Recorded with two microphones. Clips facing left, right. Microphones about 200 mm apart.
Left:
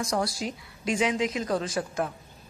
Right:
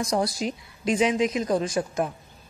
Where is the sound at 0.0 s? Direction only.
20° right (ahead or behind).